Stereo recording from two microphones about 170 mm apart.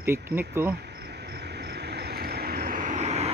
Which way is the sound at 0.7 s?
80° right.